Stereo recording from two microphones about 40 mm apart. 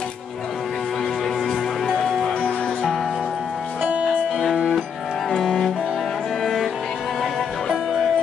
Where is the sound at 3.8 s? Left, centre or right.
Right.